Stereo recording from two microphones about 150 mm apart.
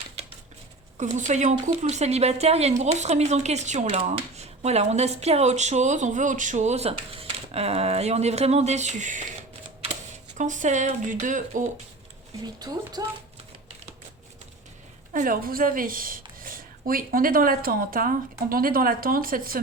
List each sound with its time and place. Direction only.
0.9 s speech: 50° right (ahead or behind)
12.5 s speech: 25° right (ahead or behind)
15.1 s speech: 65° right (ahead or behind)